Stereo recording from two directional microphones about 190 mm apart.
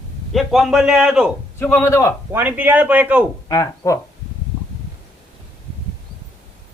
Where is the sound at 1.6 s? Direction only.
10° left (ahead or behind).